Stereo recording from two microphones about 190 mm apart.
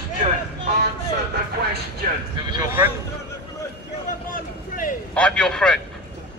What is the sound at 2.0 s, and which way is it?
Speech, 45° right (ahead or behind).